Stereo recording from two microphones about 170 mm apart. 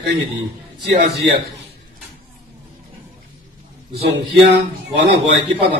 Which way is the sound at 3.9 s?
70° right (ahead or behind).